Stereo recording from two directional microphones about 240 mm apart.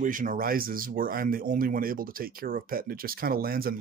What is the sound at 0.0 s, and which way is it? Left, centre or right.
Speech, right.